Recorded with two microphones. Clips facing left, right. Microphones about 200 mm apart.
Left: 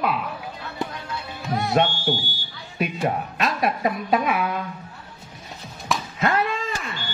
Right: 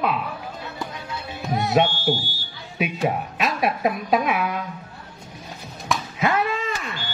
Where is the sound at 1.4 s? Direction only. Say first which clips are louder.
Right 1 dB; 20° right (ahead or behind).